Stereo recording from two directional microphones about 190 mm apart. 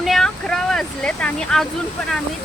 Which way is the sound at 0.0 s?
Centre (ahead or behind).